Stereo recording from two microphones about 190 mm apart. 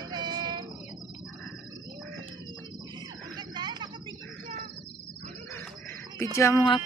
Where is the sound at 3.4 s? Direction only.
20° right (ahead or behind).